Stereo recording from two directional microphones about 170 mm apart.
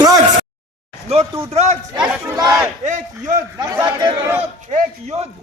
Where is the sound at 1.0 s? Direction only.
35° right (ahead or behind).